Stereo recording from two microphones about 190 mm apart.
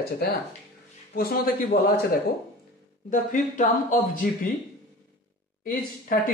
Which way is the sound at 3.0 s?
45° left (ahead or behind).